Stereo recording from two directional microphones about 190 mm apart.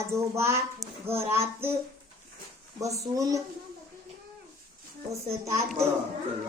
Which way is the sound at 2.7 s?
15° right (ahead or behind).